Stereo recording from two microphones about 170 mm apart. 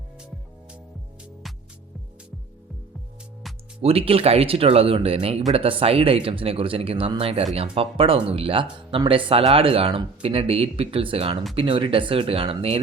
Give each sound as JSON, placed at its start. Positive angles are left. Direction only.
{"t": 3.8, "sound": "speech", "side_deg": -35}